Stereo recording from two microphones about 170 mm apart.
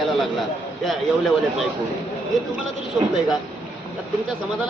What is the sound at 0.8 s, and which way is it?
Speech, centre (ahead or behind).